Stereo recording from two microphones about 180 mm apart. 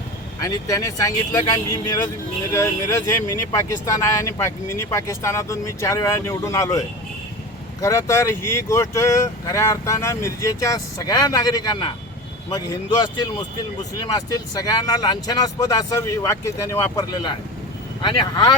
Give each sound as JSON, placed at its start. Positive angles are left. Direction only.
{"t": 0.4, "sound": "speech", "side_deg": 20}